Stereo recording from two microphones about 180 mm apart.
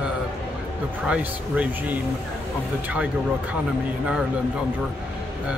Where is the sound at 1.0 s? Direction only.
5° right (ahead or behind).